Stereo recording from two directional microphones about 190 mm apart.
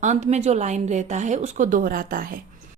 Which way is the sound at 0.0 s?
35° right (ahead or behind).